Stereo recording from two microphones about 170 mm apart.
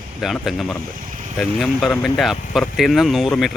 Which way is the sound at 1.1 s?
50° right (ahead or behind).